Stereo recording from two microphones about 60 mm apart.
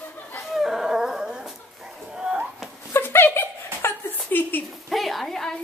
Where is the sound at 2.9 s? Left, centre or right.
Left.